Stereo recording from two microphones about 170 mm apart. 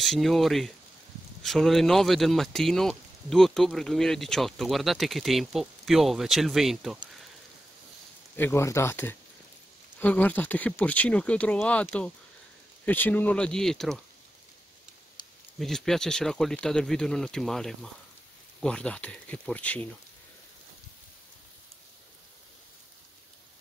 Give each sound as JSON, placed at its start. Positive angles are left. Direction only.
{"t": 0.0, "sound": "speech", "side_deg": 0}
{"t": 8.4, "sound": "speech", "side_deg": 15}
{"t": 15.2, "sound": "a sound", "side_deg": 25}
{"t": 15.6, "sound": "speech", "side_deg": 0}